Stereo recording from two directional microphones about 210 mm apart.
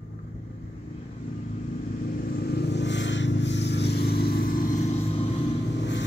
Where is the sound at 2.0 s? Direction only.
45° left (ahead or behind); by 5.3 s 30° left (ahead or behind).